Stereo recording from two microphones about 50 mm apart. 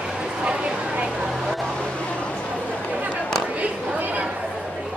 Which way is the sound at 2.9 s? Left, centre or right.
Right.